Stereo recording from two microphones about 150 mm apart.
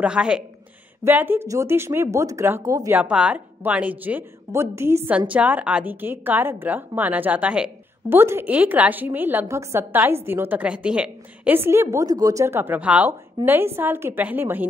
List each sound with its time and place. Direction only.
0.0 s a woman's voice: 5° right (ahead or behind); by 3.0 s 25° right (ahead or behind)
3.0 s a woman's voice: 10° right (ahead or behind)